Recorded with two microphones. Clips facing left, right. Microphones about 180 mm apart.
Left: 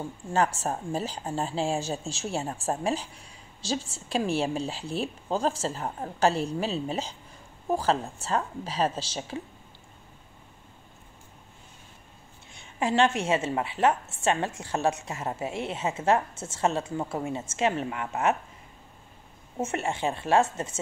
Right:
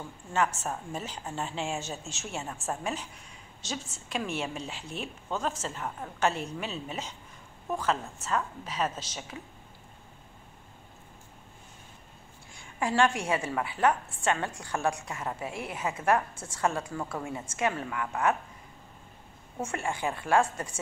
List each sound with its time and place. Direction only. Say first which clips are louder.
0.0 s a woman's voice: left 3 dB; 35° left (ahead or behind)
12.4 s a woman's voice: left 3 dB; 20° left (ahead or behind)
19.6 s a woman's voice: left 3 dB; 25° left (ahead or behind)